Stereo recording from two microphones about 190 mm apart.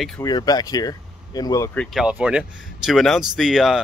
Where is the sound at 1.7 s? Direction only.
Centre (ahead or behind).